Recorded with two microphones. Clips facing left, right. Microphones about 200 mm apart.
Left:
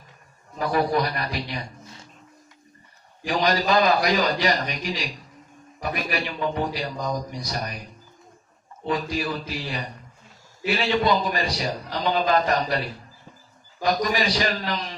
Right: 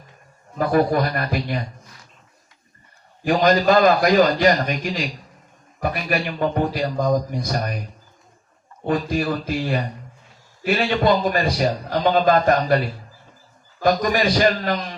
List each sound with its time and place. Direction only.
0.6 s a man's voice: 50° right (ahead or behind)
3.2 s a man's voice: 50° right (ahead or behind)
8.8 s a man's voice: 50° right (ahead or behind)
13.8 s a man's voice: 50° right (ahead or behind)